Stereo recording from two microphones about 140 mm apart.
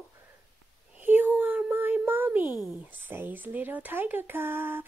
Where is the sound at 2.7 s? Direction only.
10° right (ahead or behind).